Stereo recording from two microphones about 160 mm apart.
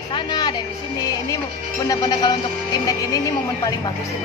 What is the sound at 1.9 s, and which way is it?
Speech, 25° left (ahead or behind).